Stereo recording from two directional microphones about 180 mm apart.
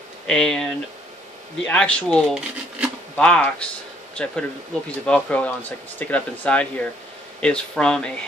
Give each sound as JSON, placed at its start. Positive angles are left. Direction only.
{"t": 0.3, "sound": "speech", "side_deg": 5}
{"t": 1.7, "sound": "speech", "side_deg": 5}